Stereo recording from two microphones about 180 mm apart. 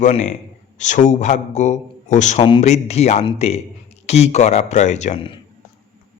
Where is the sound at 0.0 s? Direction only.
40° left (ahead or behind).